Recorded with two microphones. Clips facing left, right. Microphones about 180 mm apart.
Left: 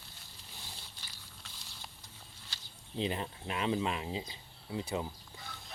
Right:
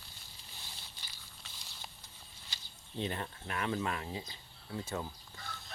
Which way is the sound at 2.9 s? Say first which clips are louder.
Left 3 dB; 15° left (ahead or behind).